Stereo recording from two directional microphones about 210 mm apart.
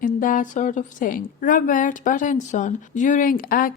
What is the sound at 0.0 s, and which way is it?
A woman's voice, 40° left (ahead or behind).